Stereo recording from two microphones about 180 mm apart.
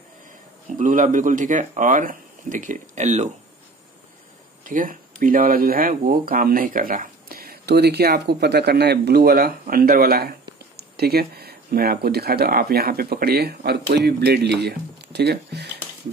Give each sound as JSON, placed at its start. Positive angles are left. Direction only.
{"t": 0.7, "sound": "speech", "side_deg": -45}
{"t": 4.6, "sound": "speech", "side_deg": -50}